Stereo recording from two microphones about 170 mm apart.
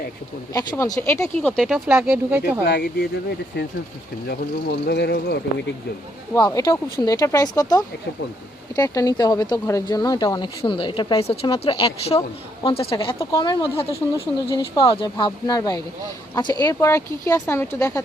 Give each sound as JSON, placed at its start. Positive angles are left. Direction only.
{"t": 0.5, "sound": "speech", "side_deg": 20}
{"t": 2.6, "sound": "speech", "side_deg": 60}
{"t": 4.3, "sound": "speech", "side_deg": 75}
{"t": 6.3, "sound": "a woman's voice", "side_deg": 20}
{"t": 13.1, "sound": "speech", "side_deg": 20}